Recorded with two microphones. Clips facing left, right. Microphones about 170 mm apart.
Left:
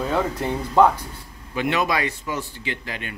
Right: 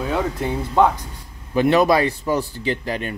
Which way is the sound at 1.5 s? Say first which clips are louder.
Right 7 dB; 35° right (ahead or behind).